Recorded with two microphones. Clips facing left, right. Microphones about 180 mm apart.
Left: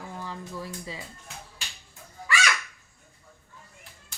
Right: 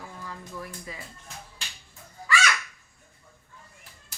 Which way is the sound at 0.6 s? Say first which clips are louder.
Left 2 dB; 25° left (ahead or behind).